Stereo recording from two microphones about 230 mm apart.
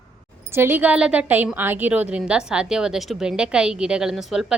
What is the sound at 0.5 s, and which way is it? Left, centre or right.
A woman's voice, centre.